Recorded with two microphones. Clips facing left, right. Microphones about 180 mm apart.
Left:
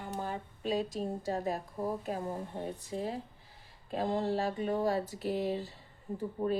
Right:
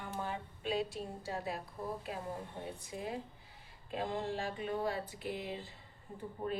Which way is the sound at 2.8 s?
35° left (ahead or behind).